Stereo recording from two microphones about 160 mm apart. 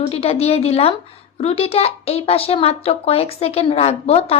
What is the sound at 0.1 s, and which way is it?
Speech, 40° left (ahead or behind).